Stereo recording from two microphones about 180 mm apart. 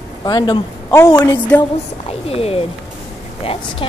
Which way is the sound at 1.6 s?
35° left (ahead or behind).